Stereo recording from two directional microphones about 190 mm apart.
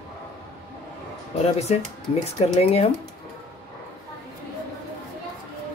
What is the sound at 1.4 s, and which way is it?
Speech, 35° left (ahead or behind).